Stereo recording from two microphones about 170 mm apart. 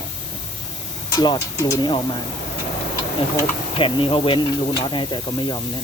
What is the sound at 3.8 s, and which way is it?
Speech, 30° left (ahead or behind).